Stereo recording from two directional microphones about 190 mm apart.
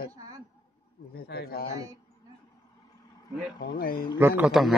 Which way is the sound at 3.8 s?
55° left (ahead or behind).